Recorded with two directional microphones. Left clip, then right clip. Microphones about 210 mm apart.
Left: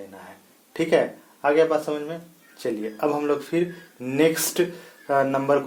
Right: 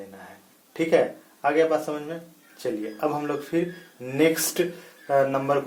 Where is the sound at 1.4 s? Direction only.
35° left (ahead or behind).